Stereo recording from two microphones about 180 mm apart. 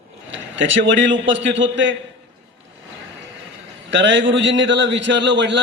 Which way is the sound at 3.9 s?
90° right.